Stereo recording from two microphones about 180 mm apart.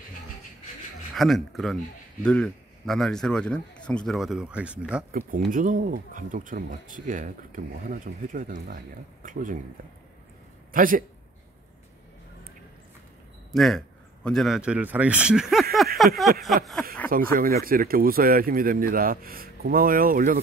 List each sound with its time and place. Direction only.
1.1 s a man's voice: centre (ahead or behind)
5.3 s speech: 50° right (ahead or behind)
10.7 s a man's voice: 50° right (ahead or behind)
13.5 s a man's voice: centre (ahead or behind)
17.1 s speech: 50° right (ahead or behind)